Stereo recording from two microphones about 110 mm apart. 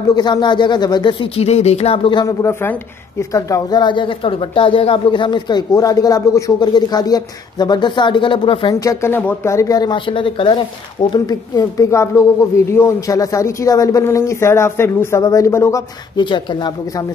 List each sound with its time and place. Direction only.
0.1 s speech: 40° left (ahead or behind)
1.3 s speech: 70° left (ahead or behind)
2.2 s a woman's voice: 25° left (ahead or behind); by 8.7 s 50° left (ahead or behind)
8.7 s a woman's voice: 30° left (ahead or behind)
9.1 s a woman's voice: 20° left (ahead or behind); by 10.6 s 50° left (ahead or behind)
11.1 s speech: 40° left (ahead or behind)
16.2 s speech: 45° left (ahead or behind)